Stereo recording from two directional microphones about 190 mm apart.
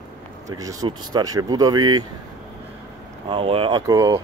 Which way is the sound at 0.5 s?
15° right (ahead or behind).